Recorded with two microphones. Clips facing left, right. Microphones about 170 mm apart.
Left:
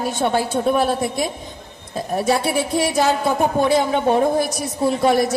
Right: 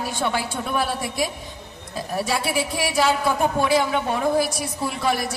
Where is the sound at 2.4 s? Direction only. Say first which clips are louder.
Left 5 dB; 25° left (ahead or behind).